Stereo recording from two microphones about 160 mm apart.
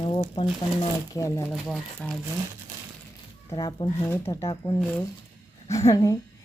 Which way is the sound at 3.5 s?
25° left (ahead or behind).